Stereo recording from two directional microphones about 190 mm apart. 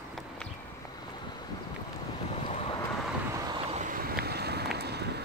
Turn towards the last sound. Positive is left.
turn(degrees=-60)  # may be behind; listen again after turning